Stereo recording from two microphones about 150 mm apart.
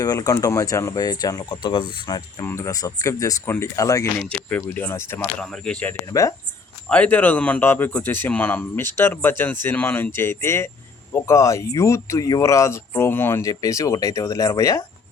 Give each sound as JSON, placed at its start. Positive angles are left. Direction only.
{"t": 0.0, "sound": "speech", "side_deg": 25}
{"t": 4.2, "sound": "speech", "side_deg": 10}
{"t": 5.4, "sound": "speech", "side_deg": 5}